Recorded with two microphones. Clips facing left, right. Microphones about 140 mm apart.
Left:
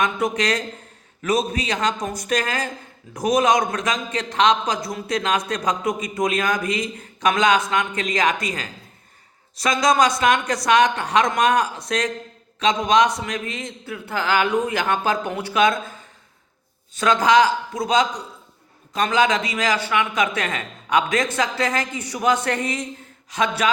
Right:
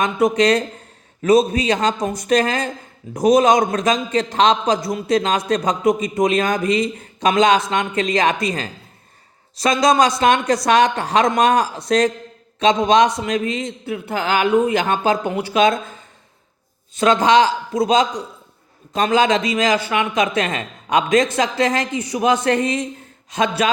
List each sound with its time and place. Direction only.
0.0 s a man's voice: 25° right (ahead or behind)
17.0 s a man's voice: 25° right (ahead or behind)